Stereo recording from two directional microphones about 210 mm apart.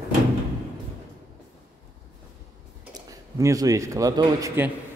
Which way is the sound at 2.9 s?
15° right (ahead or behind).